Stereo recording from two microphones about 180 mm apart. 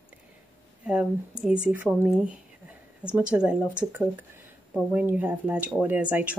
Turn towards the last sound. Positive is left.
turn(degrees=-10)  # may be behind; listen again after turning